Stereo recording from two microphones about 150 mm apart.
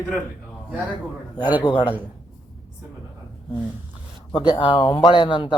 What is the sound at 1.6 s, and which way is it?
Speech, 35° left (ahead or behind).